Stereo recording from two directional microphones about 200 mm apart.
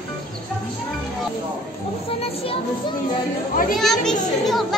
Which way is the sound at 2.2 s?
30° left (ahead or behind).